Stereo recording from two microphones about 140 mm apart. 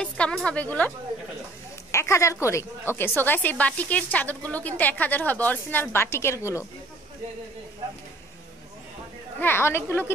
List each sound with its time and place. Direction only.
0.0 s a woman's voice: 5° left (ahead or behind); by 6.6 s 20° left (ahead or behind)
9.4 s a woman's voice: 15° left (ahead or behind)